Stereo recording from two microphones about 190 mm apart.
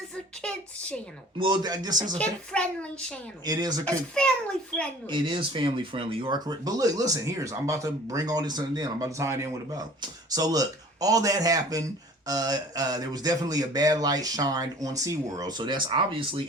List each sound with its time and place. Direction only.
0.4 s a woman's voice: 5° left (ahead or behind)
1.4 s speech: 25° right (ahead or behind)
2.1 s a child's voice: 5° left (ahead or behind)
3.4 s speech: 20° right (ahead or behind)
5.0 s speech: 25° right (ahead or behind)